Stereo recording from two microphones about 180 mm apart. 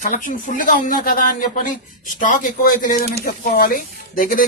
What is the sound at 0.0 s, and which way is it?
A man's voice, 45° left (ahead or behind).